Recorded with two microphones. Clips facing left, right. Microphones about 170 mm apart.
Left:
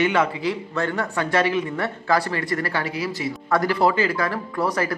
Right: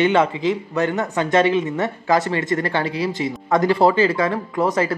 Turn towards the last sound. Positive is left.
turn(degrees=-20)  # may be behind; listen again after turning